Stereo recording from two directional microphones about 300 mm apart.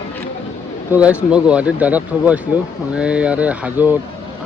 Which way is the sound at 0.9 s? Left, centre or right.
Centre.